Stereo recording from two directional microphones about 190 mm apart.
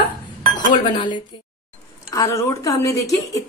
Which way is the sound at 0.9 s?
25° left (ahead or behind).